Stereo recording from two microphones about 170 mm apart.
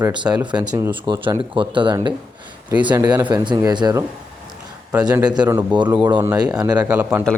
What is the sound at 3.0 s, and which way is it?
Speech, 25° right (ahead or behind).